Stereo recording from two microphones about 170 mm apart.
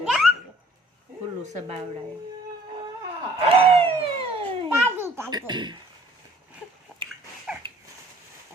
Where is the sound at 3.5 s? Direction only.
35° right (ahead or behind).